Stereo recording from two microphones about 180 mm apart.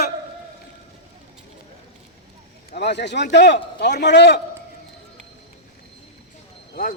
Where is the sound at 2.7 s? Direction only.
70° left (ahead or behind).